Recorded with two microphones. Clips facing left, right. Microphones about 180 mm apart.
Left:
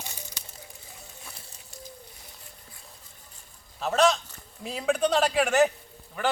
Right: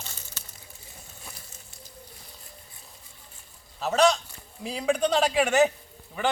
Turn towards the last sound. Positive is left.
turn(degrees=0)  # may be behind; listen again after turning